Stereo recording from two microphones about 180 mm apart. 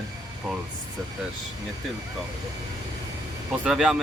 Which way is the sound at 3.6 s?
5° right (ahead or behind).